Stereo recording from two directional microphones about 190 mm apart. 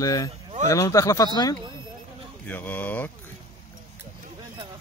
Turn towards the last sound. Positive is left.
turn(degrees=10)  # may be behind; listen again after turning